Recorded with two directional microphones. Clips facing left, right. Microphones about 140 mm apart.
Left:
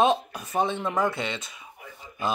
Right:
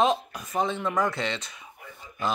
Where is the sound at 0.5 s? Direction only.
25° left (ahead or behind).